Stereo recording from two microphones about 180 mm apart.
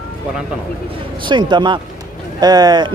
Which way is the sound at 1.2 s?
25° right (ahead or behind).